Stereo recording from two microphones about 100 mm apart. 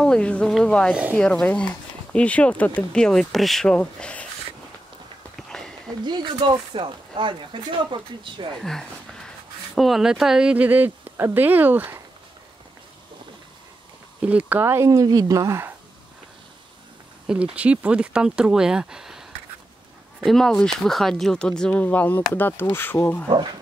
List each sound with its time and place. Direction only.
0.0 s speech: 10° left (ahead or behind)
5.5 s a sound: 5° left (ahead or behind)
6.0 s speech: 45° right (ahead or behind)
8.5 s speech: 5° left (ahead or behind); by 12.0 s 20° right (ahead or behind)
14.2 s speech: 15° right (ahead or behind)
14.9 s speech: 35° right (ahead or behind)
17.3 s speech: 10° right (ahead or behind)
20.2 s speech: 5° left (ahead or behind); by 23.2 s 20° left (ahead or behind)